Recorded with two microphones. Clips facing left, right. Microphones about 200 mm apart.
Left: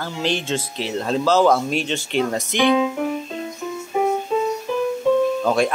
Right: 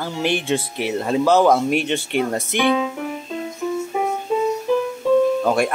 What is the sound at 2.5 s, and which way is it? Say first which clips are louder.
Music: left 1 dB; 55° right (ahead or behind).